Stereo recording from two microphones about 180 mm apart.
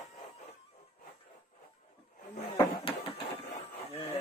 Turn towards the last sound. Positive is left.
turn(degrees=30)  # may be behind; listen again after turning